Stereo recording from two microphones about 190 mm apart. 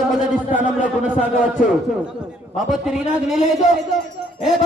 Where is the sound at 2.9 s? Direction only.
5° right (ahead or behind).